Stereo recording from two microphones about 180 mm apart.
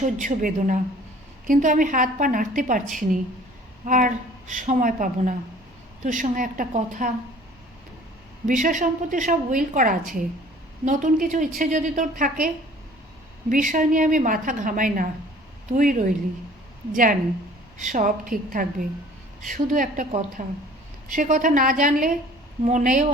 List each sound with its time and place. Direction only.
0.0 s a woman's voice: 45° right (ahead or behind)
8.4 s a woman's voice: 45° right (ahead or behind)
13.5 s a woman's voice: 45° right (ahead or behind)